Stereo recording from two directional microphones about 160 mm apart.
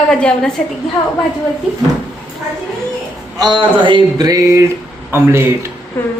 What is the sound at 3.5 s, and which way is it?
A man's voice, 30° right (ahead or behind).